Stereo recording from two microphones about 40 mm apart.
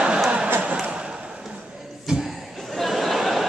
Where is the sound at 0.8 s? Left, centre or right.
Right.